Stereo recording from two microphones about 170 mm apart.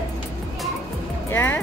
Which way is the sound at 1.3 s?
10° left (ahead or behind).